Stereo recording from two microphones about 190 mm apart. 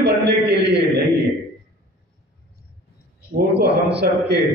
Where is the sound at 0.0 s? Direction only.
65° right (ahead or behind).